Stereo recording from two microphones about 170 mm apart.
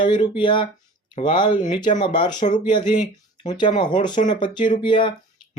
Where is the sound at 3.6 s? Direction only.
25° left (ahead or behind).